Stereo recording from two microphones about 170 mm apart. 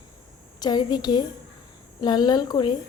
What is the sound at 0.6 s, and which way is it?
A woman's voice, 25° left (ahead or behind).